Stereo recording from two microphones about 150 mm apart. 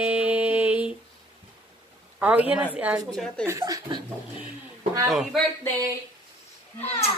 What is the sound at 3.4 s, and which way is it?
Speech, 20° right (ahead or behind).